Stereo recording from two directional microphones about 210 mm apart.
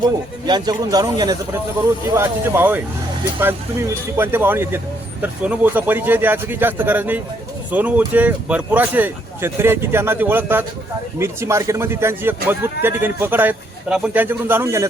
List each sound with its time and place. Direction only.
0.4 s a man's voice: 20° right (ahead or behind)